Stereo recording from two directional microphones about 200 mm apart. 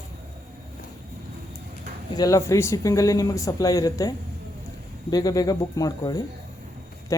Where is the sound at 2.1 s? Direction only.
15° left (ahead or behind).